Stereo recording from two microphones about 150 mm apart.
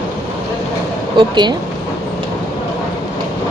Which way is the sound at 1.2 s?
30° right (ahead or behind).